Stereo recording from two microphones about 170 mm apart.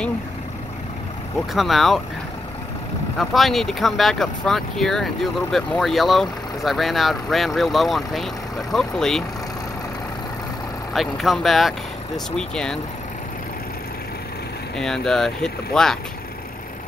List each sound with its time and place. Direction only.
1.5 s speech: centre (ahead or behind)
3.2 s speech: centre (ahead or behind)
10.9 s speech: centre (ahead or behind)
14.8 s speech: 5° left (ahead or behind)